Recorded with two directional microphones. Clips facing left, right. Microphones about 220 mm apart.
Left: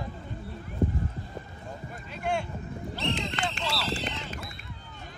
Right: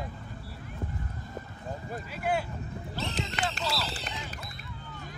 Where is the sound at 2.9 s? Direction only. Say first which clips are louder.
Left 3 dB; 45° right (ahead or behind).